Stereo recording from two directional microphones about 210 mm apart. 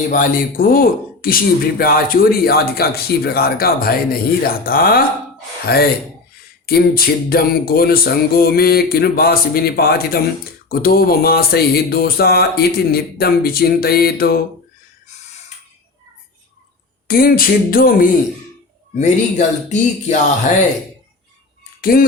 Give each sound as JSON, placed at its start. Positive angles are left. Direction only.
{"t": 0.1, "sound": "speech", "side_deg": 40}
{"t": 17.1, "sound": "speech", "side_deg": 45}
{"t": 21.8, "sound": "a sound", "side_deg": 45}